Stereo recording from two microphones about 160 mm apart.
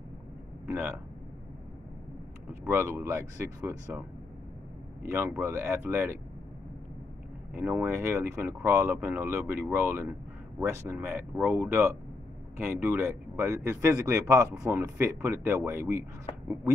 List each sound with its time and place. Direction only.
0.7 s speech: 15° right (ahead or behind)
2.6 s speech: 15° right (ahead or behind)
5.0 s speech: 15° right (ahead or behind)
7.5 s speech: 15° right (ahead or behind)